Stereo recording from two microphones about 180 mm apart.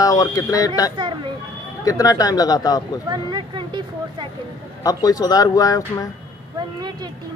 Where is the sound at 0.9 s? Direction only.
25° right (ahead or behind).